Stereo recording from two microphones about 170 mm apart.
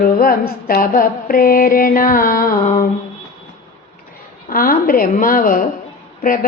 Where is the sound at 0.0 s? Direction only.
60° left (ahead or behind).